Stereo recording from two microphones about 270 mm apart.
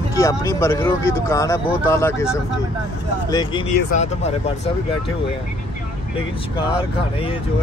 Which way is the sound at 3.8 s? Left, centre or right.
Left.